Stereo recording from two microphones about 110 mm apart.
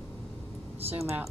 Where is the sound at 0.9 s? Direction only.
20° right (ahead or behind).